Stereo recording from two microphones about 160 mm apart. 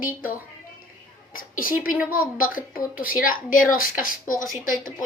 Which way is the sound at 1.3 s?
60° left (ahead or behind).